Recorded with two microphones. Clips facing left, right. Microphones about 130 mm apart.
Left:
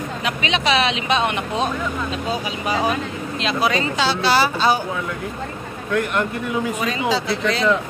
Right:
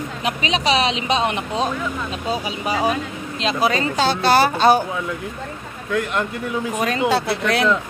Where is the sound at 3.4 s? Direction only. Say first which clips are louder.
Right 1 dB; 35° right (ahead or behind); by 4.8 s 55° right (ahead or behind).